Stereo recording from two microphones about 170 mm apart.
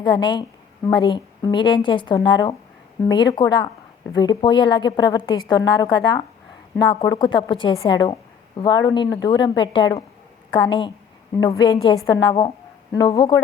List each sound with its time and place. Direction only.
0.0 s a woman's voice: 25° left (ahead or behind)